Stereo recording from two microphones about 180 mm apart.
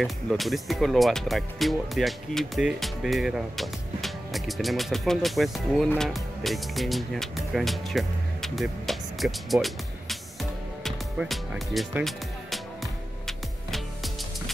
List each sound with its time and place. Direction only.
0.0 s speech: centre (ahead or behind)
10.8 s music: centre (ahead or behind)